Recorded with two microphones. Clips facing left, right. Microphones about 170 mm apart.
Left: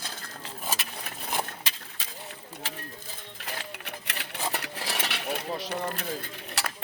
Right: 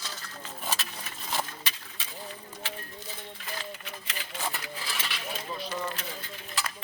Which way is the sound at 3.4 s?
70° left (ahead or behind).